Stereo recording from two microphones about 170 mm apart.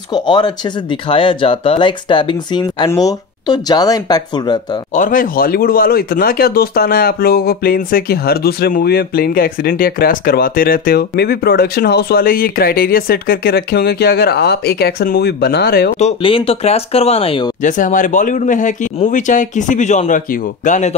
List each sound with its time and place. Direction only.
0.1 s speech: 25° left (ahead or behind)
4.9 s speech: 50° left (ahead or behind); by 15.9 s 65° left (ahead or behind)
16.0 s speech: 35° left (ahead or behind)
17.6 s speech: 50° left (ahead or behind)